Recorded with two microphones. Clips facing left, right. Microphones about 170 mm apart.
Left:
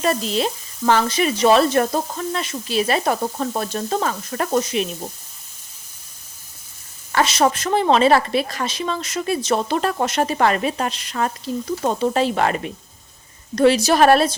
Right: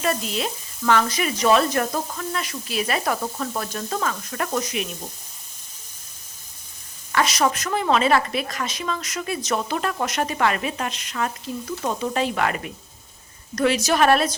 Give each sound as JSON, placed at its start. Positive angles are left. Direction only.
{"t": 0.0, "sound": "a woman's voice", "side_deg": 30}
{"t": 7.1, "sound": "a woman's voice", "side_deg": 30}